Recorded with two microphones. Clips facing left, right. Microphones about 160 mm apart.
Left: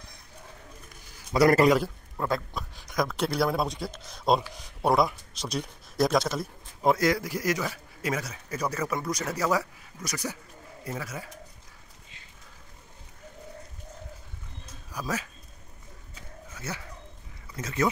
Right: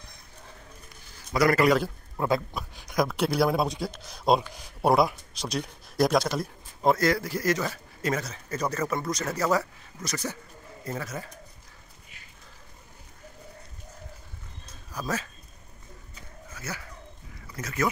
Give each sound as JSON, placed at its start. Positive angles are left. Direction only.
{"t": 1.3, "sound": "a man's voice", "side_deg": 35}
{"t": 2.1, "sound": "a man's voice", "side_deg": -10}
{"t": 14.9, "sound": "speech", "side_deg": 10}
{"t": 16.5, "sound": "speech", "side_deg": 25}